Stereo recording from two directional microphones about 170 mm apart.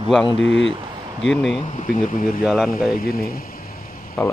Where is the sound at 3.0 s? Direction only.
60° left (ahead or behind).